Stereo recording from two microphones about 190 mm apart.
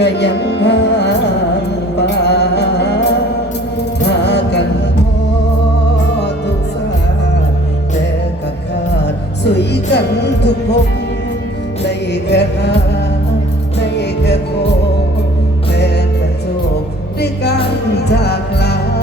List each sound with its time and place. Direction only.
0.0 s music: 65° left (ahead or behind)
9.0 s music: 65° left (ahead or behind)
11.9 s music: 65° left (ahead or behind)
17.2 s music: 60° left (ahead or behind)